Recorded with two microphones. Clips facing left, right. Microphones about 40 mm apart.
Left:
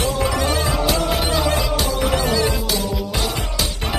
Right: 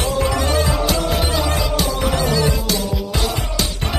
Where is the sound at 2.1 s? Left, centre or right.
Left.